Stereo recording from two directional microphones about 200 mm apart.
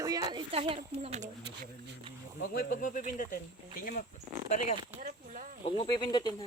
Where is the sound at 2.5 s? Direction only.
45° left (ahead or behind).